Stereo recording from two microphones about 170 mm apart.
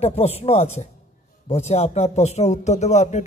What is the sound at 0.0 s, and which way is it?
A man's voice, 40° left (ahead or behind).